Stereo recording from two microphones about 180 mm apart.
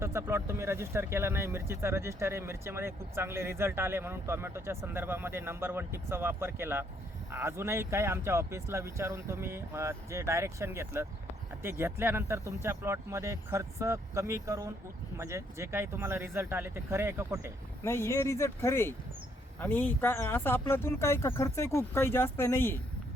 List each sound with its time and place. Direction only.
0.0 s speech: 15° right (ahead or behind)
17.8 s speech: 15° left (ahead or behind)